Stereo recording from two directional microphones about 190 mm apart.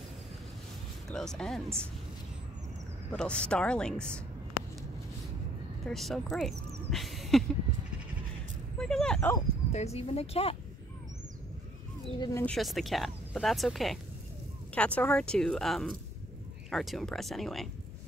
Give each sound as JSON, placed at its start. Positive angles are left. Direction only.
{"t": 1.1, "sound": "speech", "side_deg": 5}
{"t": 3.1, "sound": "speech", "side_deg": 5}
{"t": 5.9, "sound": "speech", "side_deg": 0}
{"t": 6.9, "sound": "a sound", "side_deg": 0}
{"t": 8.7, "sound": "dog", "side_deg": 5}
{"t": 9.7, "sound": "speech", "side_deg": 35}
{"t": 12.2, "sound": "speech", "side_deg": 20}
{"t": 12.4, "sound": "speech", "side_deg": 0}